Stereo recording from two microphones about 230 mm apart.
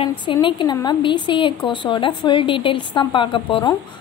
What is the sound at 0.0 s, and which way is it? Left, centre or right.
A woman's voice, left.